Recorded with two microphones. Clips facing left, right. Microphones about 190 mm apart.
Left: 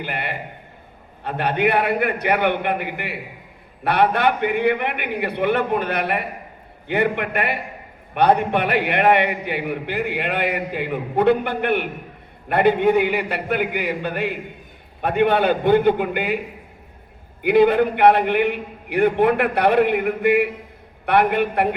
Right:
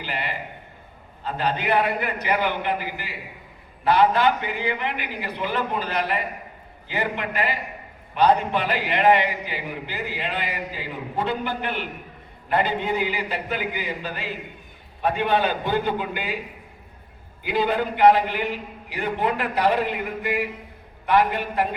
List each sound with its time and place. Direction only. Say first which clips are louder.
0.0 s a man's voice: left 2 dB; 55° left (ahead or behind)
17.4 s a man's voice: left 8 dB; 60° left (ahead or behind)